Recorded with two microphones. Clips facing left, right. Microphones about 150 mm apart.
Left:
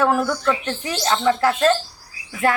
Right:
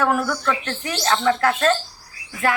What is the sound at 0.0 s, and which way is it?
A woman's voice, 25° left (ahead or behind).